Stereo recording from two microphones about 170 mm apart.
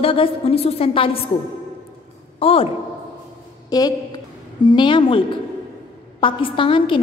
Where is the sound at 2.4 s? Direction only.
35° left (ahead or behind).